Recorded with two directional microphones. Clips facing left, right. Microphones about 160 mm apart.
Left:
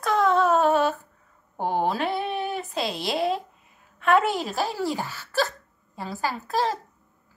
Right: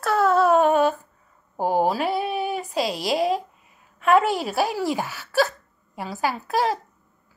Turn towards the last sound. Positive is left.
turn(degrees=-15)  # may be behind; listen again after turning